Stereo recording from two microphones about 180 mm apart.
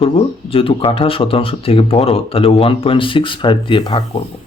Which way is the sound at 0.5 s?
30° left (ahead or behind).